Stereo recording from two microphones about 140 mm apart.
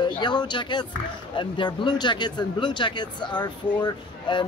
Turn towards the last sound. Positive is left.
turn(degrees=35)  # may be behind; listen again after turning